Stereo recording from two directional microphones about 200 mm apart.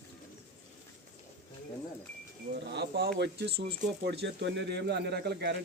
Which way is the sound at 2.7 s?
55° right (ahead or behind).